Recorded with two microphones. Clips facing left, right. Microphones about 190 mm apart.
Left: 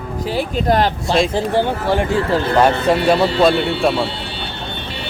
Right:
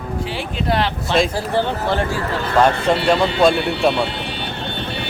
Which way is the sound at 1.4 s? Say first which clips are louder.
Left 3 dB; 15° left (ahead or behind).